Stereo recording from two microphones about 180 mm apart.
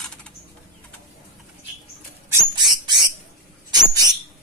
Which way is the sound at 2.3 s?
25° right (ahead or behind).